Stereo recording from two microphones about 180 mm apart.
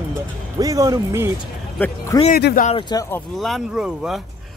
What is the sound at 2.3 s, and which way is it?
Speech, 55° left (ahead or behind).